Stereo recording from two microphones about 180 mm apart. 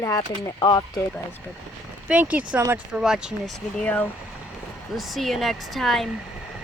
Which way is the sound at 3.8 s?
10° left (ahead or behind).